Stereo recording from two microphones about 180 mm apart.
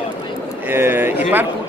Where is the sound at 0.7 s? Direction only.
10° right (ahead or behind).